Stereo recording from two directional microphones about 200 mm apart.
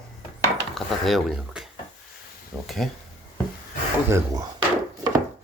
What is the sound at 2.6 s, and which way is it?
Speech, centre (ahead or behind).